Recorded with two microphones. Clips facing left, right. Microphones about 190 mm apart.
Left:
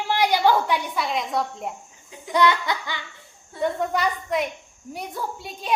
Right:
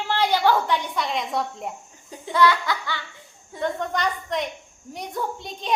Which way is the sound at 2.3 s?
20° left (ahead or behind).